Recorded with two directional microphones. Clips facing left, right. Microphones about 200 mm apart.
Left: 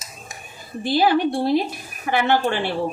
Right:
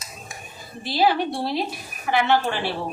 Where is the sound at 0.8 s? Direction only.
50° left (ahead or behind).